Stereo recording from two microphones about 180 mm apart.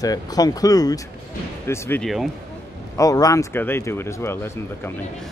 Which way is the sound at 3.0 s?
20° left (ahead or behind).